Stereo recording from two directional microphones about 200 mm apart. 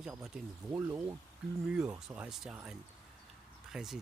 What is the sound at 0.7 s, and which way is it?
Speech, 15° right (ahead or behind).